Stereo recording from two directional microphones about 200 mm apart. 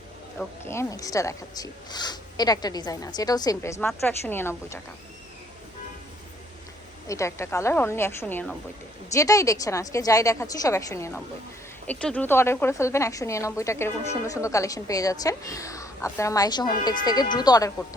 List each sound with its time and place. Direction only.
0.3 s speech: 15° left (ahead or behind)
7.1 s speech: 15° left (ahead or behind)